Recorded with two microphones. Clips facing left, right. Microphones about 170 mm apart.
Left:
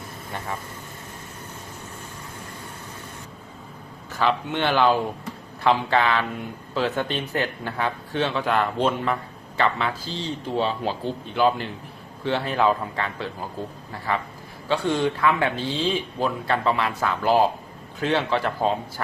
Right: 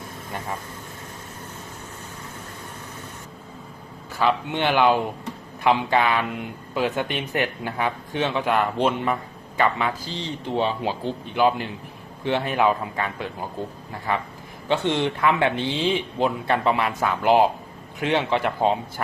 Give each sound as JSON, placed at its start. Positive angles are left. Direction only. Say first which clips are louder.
{"t": 4.5, "sound": "a man's voice", "louder": "right 1 dB", "side_deg": -15}
{"t": 14.7, "sound": "a man's voice", "louder": "even", "side_deg": -20}